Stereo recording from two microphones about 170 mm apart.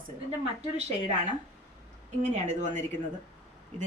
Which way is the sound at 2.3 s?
45° right (ahead or behind).